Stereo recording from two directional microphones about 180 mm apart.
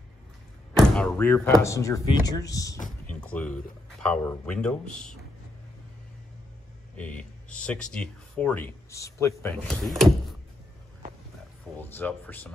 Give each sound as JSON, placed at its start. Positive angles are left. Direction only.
{"t": 0.7, "sound": "speech", "side_deg": 5}
{"t": 3.1, "sound": "speech", "side_deg": 5}
{"t": 7.0, "sound": "speech", "side_deg": 5}
{"t": 9.8, "sound": "drawer open or close", "side_deg": 0}
{"t": 11.8, "sound": "speech", "side_deg": 10}